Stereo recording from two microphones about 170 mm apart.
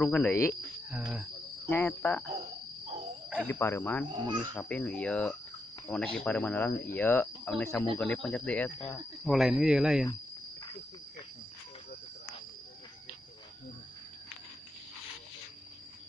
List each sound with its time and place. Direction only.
0.0 s speech: 10° left (ahead or behind)
0.8 s speech: 5° right (ahead or behind)
1.7 s speech: 15° left (ahead or behind)
3.3 s speech: 15° left (ahead or behind)
4.1 s speech: 25° right (ahead or behind)
4.6 s speech: 5° left (ahead or behind)